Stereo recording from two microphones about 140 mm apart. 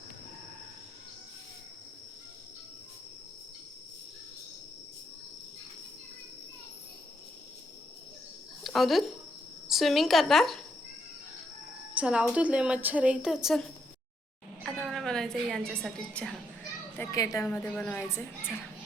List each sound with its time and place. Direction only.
8.6 s a woman's voice: centre (ahead or behind)
11.9 s a woman's voice: 10° right (ahead or behind)
17.0 s a child's voice: 20° left (ahead or behind)
17.4 s a woman's voice: 10° left (ahead or behind)